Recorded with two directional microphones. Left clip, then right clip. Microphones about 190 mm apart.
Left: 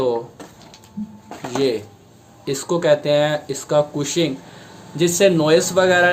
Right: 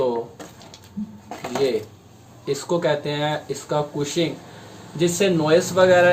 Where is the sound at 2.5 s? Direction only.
45° left (ahead or behind).